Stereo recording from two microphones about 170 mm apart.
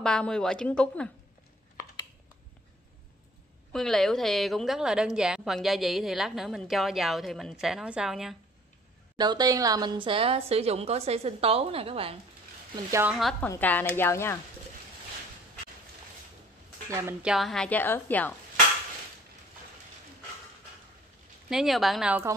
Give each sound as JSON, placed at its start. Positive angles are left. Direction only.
{"t": 0.0, "sound": "a woman's voice", "side_deg": 5}
{"t": 3.7, "sound": "a woman's voice", "side_deg": 0}
{"t": 9.1, "sound": "a woman's voice", "side_deg": -25}
{"t": 13.1, "sound": "a woman's voice", "side_deg": 0}
{"t": 16.9, "sound": "speech", "side_deg": -15}
{"t": 17.3, "sound": "a woman's voice", "side_deg": 0}
{"t": 21.5, "sound": "a woman's voice", "side_deg": 0}